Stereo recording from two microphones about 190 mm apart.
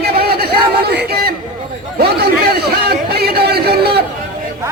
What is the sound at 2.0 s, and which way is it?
A man's voice, 55° right (ahead or behind).